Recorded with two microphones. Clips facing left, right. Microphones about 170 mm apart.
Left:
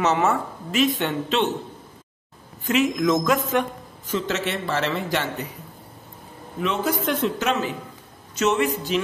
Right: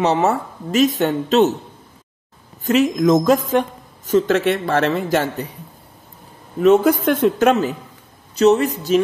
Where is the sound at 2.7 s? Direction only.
40° right (ahead or behind).